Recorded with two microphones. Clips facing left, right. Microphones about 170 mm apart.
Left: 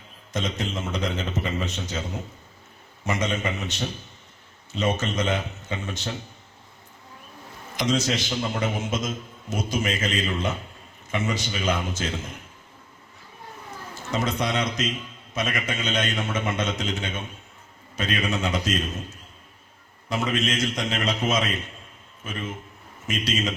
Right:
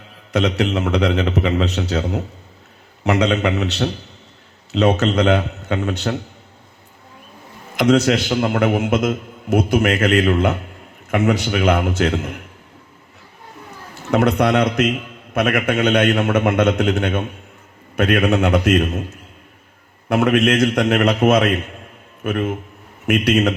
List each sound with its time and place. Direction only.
0.0 s a man's voice: 70° right (ahead or behind)
7.8 s a man's voice: 65° right (ahead or behind)
14.1 s a man's voice: 65° right (ahead or behind)
20.1 s a man's voice: 65° right (ahead or behind)